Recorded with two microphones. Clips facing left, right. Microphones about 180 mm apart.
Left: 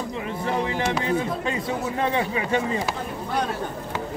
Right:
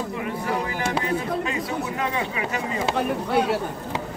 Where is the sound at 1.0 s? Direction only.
30° left (ahead or behind).